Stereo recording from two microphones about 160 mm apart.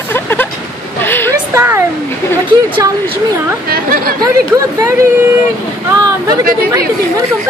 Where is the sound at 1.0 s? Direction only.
15° left (ahead or behind).